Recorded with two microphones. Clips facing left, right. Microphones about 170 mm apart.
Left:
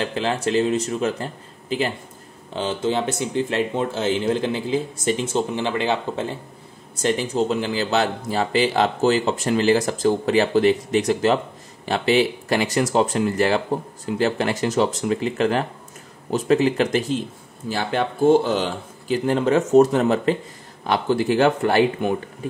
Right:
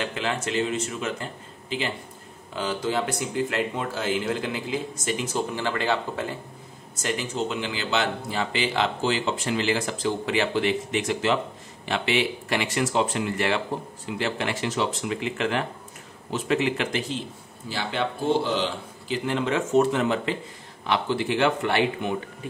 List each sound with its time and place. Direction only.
0.0 s speech: 35° left (ahead or behind)
2.5 s speech: 25° left (ahead or behind); by 22.1 s 45° left (ahead or behind)